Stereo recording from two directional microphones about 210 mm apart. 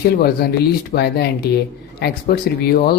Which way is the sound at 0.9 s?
50° left (ahead or behind).